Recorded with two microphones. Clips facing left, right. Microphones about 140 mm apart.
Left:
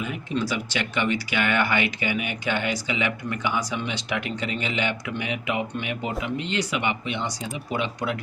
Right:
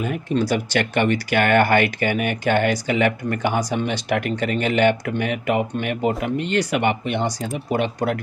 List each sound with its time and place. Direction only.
0.0 s speech: 45° right (ahead or behind)